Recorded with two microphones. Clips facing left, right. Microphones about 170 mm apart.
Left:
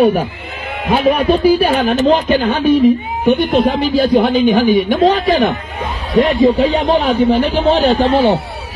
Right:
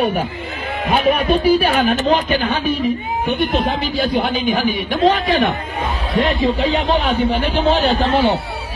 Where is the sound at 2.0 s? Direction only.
40° left (ahead or behind).